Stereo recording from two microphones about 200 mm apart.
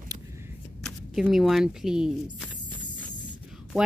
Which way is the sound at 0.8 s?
Centre (ahead or behind).